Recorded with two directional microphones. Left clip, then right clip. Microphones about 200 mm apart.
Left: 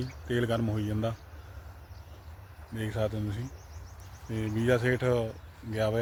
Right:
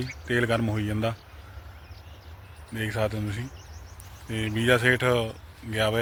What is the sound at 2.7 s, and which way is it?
Speech, 15° right (ahead or behind).